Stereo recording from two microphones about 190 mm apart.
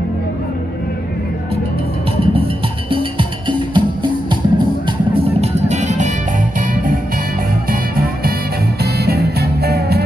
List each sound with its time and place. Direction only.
2.3 s music: 30° right (ahead or behind)
9.0 s music: 55° right (ahead or behind)